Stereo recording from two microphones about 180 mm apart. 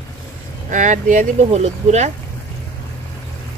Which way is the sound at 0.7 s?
45° right (ahead or behind).